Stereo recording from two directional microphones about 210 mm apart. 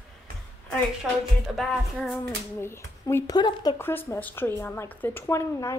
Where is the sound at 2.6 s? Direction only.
10° left (ahead or behind).